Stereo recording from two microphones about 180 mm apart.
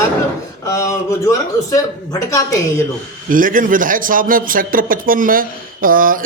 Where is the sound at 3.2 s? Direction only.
50° right (ahead or behind).